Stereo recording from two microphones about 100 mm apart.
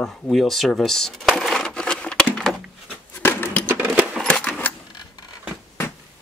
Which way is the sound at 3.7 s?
15° right (ahead or behind).